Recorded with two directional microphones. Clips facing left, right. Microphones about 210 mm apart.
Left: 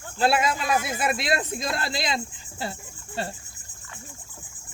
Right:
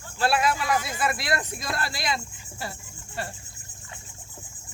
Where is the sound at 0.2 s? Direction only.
25° left (ahead or behind).